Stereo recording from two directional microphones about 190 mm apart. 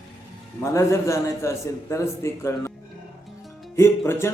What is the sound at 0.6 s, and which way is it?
Speech, 15° left (ahead or behind).